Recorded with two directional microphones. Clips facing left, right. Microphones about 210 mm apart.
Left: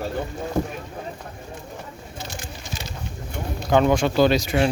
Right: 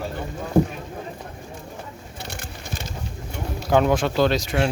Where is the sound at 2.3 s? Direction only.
60° right (ahead or behind).